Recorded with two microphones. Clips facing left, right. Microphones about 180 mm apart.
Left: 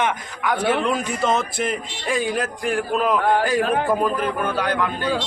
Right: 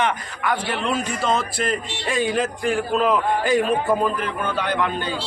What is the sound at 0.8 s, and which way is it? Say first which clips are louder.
Speech: left 1 dB; 20° left (ahead or behind).